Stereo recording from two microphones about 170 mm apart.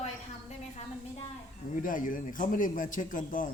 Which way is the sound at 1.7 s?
50° left (ahead or behind).